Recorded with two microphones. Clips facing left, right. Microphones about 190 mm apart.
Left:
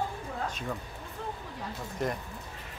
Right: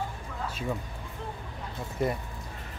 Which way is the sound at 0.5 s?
10° right (ahead or behind).